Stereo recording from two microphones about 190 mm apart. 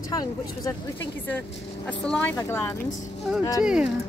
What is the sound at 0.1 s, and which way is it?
Speech, 20° left (ahead or behind).